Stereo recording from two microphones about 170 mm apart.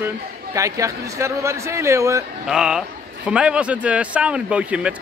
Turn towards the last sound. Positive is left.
turn(degrees=-5)  # may be behind; listen again after turning